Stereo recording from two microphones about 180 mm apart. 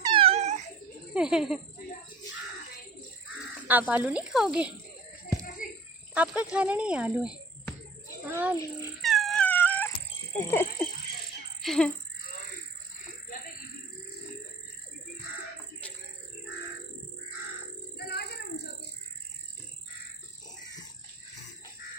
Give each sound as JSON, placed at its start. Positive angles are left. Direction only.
{"t": 0.0, "sound": "cat", "side_deg": -30}
{"t": 1.1, "sound": "speech", "side_deg": -5}
{"t": 3.7, "sound": "speech", "side_deg": -10}
{"t": 5.6, "sound": "a sound", "side_deg": 50}
{"t": 6.1, "sound": "speech", "side_deg": -5}
{"t": 9.0, "sound": "dog", "side_deg": 0}
{"t": 10.3, "sound": "speech", "side_deg": 10}
{"t": 17.9, "sound": "a sound", "side_deg": 65}